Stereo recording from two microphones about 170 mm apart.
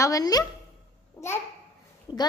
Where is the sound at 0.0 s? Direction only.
20° left (ahead or behind).